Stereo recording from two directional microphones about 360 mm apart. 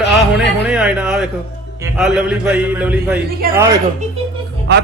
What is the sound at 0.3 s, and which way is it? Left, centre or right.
A man's voice, centre.